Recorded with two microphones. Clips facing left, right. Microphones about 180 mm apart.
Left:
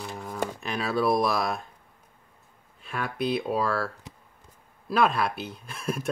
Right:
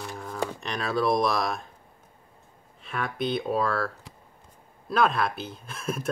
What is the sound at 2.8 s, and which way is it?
Speech, centre (ahead or behind).